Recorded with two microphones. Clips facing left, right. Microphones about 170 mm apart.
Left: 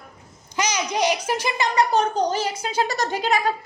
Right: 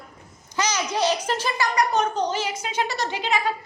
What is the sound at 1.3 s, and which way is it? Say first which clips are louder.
Speech: left 1 dB; 15° left (ahead or behind).